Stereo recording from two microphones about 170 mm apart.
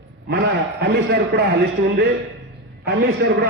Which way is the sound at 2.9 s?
65° right (ahead or behind).